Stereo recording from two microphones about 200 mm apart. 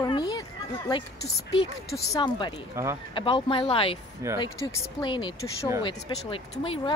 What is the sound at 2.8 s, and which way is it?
Speech, 15° right (ahead or behind).